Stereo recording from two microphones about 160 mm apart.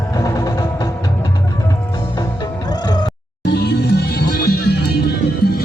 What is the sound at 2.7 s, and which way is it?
Music, 25° left (ahead or behind).